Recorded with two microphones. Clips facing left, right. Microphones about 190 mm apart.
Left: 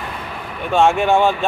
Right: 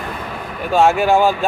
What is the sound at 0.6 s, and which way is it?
Speech, 5° right (ahead or behind).